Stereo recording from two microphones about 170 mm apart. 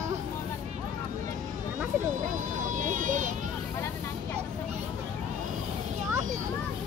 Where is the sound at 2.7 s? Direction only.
50° right (ahead or behind).